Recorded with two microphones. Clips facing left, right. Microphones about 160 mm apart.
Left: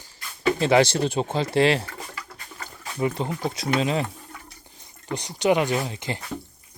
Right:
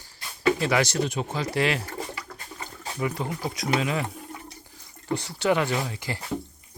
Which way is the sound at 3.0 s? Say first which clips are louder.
Left 4 dB; 25° left (ahead or behind).